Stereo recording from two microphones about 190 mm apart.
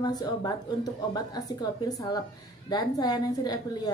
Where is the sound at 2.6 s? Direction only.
20° left (ahead or behind).